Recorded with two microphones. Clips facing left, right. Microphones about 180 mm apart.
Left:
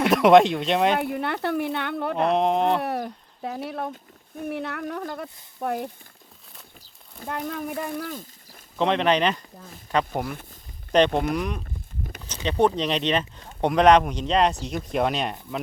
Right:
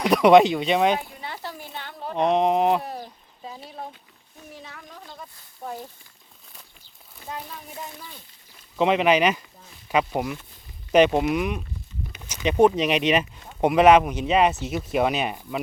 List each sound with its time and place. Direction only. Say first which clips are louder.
0.0 s speech: even; centre (ahead or behind)
0.9 s speech: left 8 dB; 65° left (ahead or behind)
2.1 s speech: right 2 dB; centre (ahead or behind)
2.8 s speech: left 7 dB; 70° left (ahead or behind)
7.3 s speech: left 7 dB; 55° left (ahead or behind)
8.8 s speech: right 2 dB; 5° right (ahead or behind)